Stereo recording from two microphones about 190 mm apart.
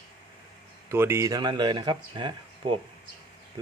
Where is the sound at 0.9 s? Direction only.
10° right (ahead or behind).